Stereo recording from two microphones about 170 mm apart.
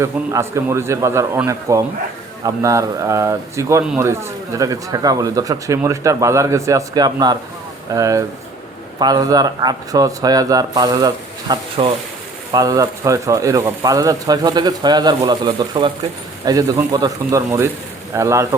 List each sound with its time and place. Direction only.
0.0 s a man's voice: 15° right (ahead or behind)